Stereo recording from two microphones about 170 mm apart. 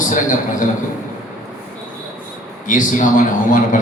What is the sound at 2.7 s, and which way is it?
A man's voice, 50° left (ahead or behind).